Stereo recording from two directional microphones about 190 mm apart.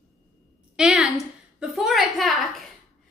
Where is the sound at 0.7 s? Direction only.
5° right (ahead or behind).